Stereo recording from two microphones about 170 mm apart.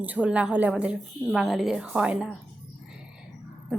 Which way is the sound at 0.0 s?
10° right (ahead or behind).